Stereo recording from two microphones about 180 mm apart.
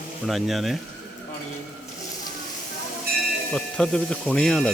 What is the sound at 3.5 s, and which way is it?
Speech, 5° left (ahead or behind).